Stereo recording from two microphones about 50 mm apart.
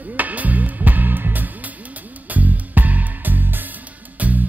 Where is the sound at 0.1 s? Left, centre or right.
Right.